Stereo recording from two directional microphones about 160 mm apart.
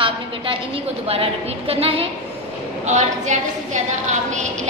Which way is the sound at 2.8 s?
45° right (ahead or behind).